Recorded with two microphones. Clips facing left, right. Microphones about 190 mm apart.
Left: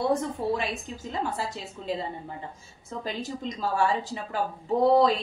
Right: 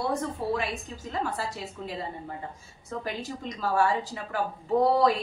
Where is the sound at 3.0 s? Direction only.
25° left (ahead or behind).